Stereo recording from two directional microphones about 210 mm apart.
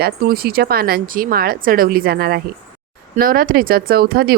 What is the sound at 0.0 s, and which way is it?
Speech, 45° right (ahead or behind).